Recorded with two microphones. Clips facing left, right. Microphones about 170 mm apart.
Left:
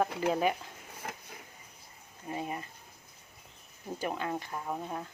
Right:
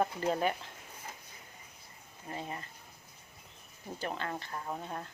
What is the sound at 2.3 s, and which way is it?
Speech, 10° left (ahead or behind).